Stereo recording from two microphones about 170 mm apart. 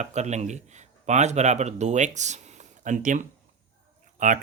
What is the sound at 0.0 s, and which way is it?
Speech, 45° right (ahead or behind).